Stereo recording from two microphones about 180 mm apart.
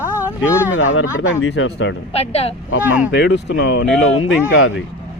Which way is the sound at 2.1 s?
35° left (ahead or behind).